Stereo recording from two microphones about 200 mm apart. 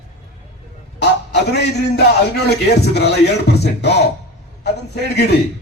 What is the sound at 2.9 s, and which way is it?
Music, 55° left (ahead or behind).